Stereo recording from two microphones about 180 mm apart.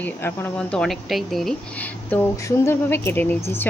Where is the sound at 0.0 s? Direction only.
10° left (ahead or behind).